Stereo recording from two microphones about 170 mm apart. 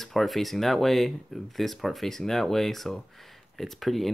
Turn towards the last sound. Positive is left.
turn(degrees=0)  # may be behind; listen again after turning